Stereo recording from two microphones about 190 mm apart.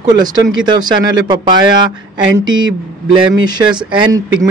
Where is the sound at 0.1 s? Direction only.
20° right (ahead or behind).